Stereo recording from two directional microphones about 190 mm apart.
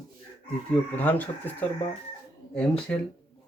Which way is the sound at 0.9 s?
10° left (ahead or behind).